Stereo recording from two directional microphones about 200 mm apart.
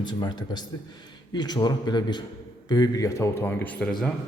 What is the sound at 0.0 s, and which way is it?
A man's voice, 20° left (ahead or behind).